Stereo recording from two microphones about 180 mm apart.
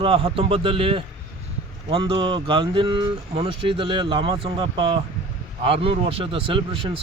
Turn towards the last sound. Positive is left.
turn(degrees=-30)  # may be behind; listen again after turning